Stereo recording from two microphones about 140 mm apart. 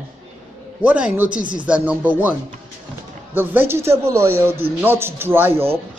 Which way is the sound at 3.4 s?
15° right (ahead or behind).